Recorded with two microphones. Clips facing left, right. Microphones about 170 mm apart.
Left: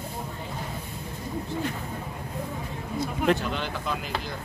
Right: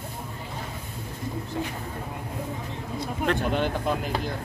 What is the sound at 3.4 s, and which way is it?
Speech, 50° right (ahead or behind).